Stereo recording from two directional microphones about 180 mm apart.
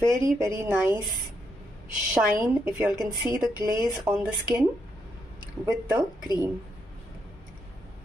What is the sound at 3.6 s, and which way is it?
Speech, 20° right (ahead or behind).